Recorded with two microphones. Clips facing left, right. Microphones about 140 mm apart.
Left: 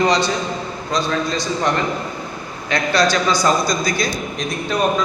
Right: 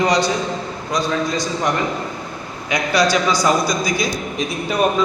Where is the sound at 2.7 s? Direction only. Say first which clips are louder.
Even; 10° right (ahead or behind).